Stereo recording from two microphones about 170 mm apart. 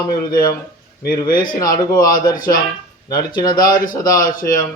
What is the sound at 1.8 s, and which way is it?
Speech, 20° left (ahead or behind).